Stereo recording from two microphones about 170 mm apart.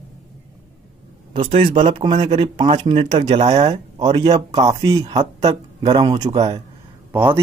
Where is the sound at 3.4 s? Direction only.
40° right (ahead or behind).